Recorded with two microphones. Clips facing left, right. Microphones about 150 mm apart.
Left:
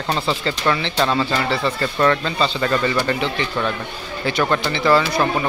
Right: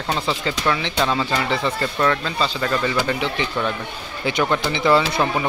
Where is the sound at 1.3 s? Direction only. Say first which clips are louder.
Left 1 dB; 15° right (ahead or behind).